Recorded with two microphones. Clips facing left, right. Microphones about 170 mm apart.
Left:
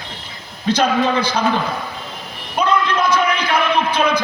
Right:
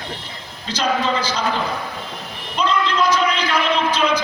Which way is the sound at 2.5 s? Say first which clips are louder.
Left 2 dB; 55° left (ahead or behind).